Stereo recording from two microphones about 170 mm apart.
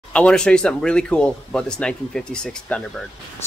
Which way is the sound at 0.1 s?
5° left (ahead or behind).